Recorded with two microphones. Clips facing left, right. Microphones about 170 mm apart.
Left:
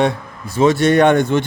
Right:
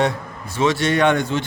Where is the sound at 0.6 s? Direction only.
50° left (ahead or behind).